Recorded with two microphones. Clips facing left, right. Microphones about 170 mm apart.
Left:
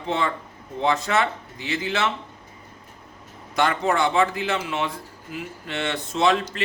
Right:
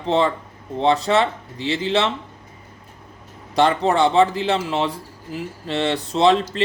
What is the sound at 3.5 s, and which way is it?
A man's voice, 30° right (ahead or behind).